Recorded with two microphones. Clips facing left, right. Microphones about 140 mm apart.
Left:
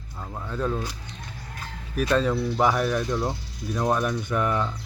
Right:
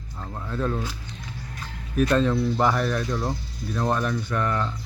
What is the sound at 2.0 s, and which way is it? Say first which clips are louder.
Speech: right 2 dB; 5° left (ahead or behind).